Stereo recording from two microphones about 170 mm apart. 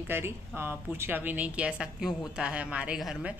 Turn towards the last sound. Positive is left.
turn(degrees=-5)  # may be behind; listen again after turning